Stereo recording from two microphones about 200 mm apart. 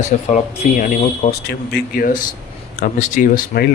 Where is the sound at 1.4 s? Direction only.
50° left (ahead or behind).